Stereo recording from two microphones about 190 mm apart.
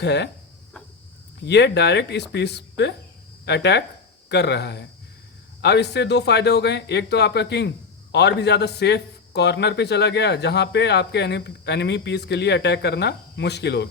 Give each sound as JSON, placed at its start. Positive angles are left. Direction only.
{"t": 0.0, "sound": "a man's voice", "side_deg": 60}
{"t": 1.5, "sound": "a man's voice", "side_deg": 65}